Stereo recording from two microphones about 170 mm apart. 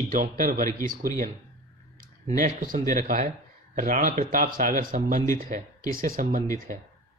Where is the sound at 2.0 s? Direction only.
55° right (ahead or behind).